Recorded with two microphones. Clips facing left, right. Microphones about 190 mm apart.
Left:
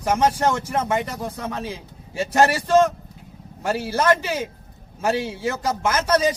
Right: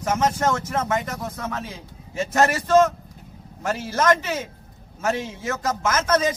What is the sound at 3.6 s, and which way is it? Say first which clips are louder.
A man's voice: left 1 dB; 30° left (ahead or behind).